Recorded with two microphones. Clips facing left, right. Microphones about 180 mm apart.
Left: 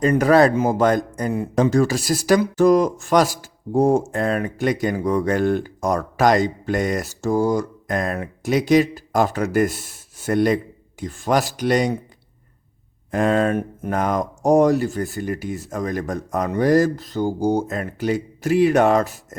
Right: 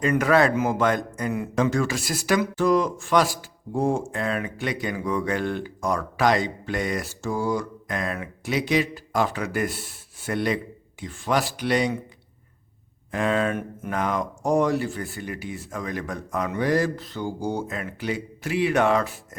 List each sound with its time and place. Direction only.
0.0 s a man's voice: 35° left (ahead or behind)
13.1 s a man's voice: 45° left (ahead or behind)